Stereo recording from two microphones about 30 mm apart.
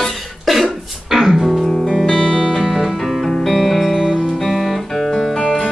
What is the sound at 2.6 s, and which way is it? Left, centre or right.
Music, centre.